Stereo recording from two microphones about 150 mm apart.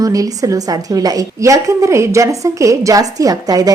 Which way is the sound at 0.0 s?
20° right (ahead or behind).